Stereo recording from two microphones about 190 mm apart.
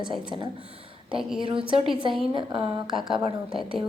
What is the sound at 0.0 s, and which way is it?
Speech, 25° right (ahead or behind).